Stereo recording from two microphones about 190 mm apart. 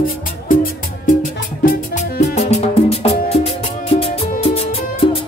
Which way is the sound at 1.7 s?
40° left (ahead or behind).